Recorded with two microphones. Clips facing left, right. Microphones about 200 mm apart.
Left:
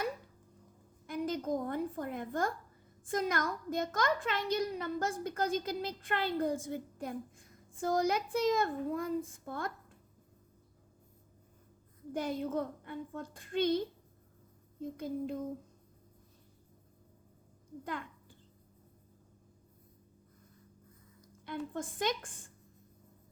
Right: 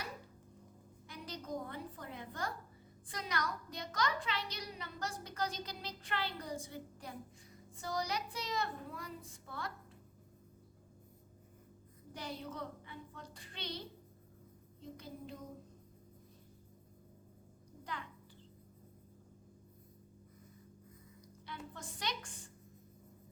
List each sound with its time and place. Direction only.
1.0 s a woman's voice: 50° left (ahead or behind)
12.1 s a child's voice: 50° left (ahead or behind)
21.4 s a child's voice: 50° left (ahead or behind)